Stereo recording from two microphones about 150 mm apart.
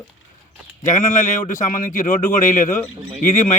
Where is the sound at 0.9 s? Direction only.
55° left (ahead or behind).